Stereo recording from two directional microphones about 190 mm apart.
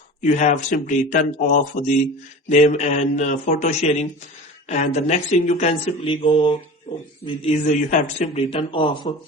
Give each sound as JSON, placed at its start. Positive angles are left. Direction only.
{"t": 0.2, "sound": "speech", "side_deg": 40}